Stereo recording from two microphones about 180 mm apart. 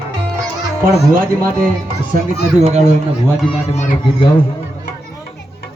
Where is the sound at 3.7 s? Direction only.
35° left (ahead or behind).